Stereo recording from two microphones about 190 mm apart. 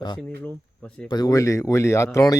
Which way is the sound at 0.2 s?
5° left (ahead or behind).